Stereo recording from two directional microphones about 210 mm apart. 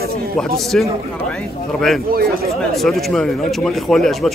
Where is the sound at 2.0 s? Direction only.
45° right (ahead or behind).